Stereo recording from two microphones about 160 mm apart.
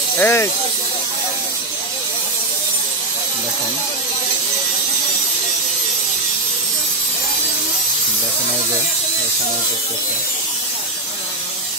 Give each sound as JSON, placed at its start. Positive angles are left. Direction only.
{"t": 0.2, "sound": "speech", "side_deg": 15}